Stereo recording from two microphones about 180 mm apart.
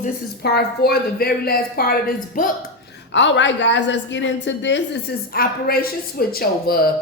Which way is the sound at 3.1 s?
85° left.